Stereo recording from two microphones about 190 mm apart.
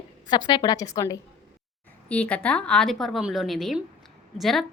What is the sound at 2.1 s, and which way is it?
A woman's voice, 5° left (ahead or behind).